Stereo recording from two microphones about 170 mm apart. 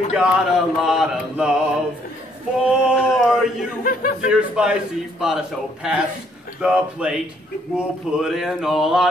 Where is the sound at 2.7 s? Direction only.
5° right (ahead or behind).